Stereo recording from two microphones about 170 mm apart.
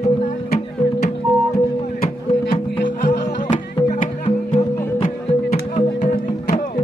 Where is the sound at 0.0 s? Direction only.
50° left (ahead or behind).